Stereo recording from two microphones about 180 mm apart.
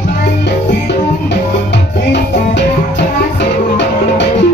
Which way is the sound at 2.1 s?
75° left (ahead or behind).